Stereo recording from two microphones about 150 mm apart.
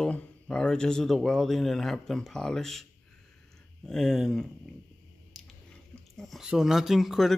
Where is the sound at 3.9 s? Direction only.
Centre (ahead or behind).